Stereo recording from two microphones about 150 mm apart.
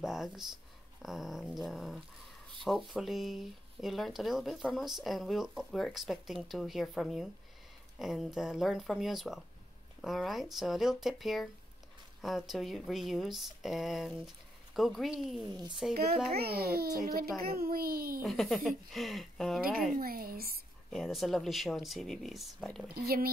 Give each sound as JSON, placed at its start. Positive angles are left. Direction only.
{"t": 0.0, "sound": "speech", "side_deg": -5}
{"t": 15.5, "sound": "a child's voice", "side_deg": -30}
{"t": 15.9, "sound": "a child's voice", "side_deg": -90}
{"t": 17.0, "sound": "a child's voice", "side_deg": -80}
{"t": 18.2, "sound": "speech", "side_deg": 0}
{"t": 20.0, "sound": "a child's voice", "side_deg": -75}
{"t": 20.9, "sound": "speech", "side_deg": 0}
{"t": 22.9, "sound": "a child's voice", "side_deg": -90}